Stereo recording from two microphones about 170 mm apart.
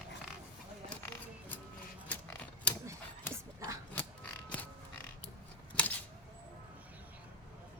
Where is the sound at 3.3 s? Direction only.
20° right (ahead or behind).